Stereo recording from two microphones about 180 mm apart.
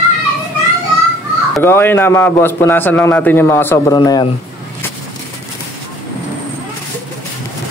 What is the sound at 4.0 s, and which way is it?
Speech, 25° left (ahead or behind).